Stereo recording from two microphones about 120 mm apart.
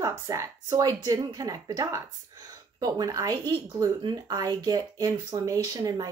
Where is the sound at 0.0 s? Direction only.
25° right (ahead or behind).